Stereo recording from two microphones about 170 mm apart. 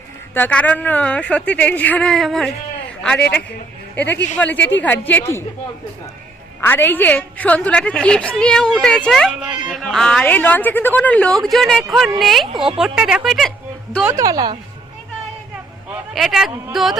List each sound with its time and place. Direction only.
0.3 s a woman's voice: 10° left (ahead or behind)
6.6 s a woman's voice: 10° left (ahead or behind)
14.2 s a woman's voice: 20° right (ahead or behind)
15.9 s a woman's voice: centre (ahead or behind)